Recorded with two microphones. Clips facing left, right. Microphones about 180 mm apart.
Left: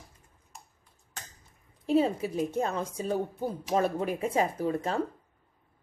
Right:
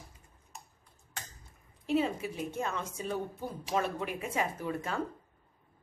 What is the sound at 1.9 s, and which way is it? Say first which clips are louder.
A woman's voice: left 5 dB; 35° left (ahead or behind).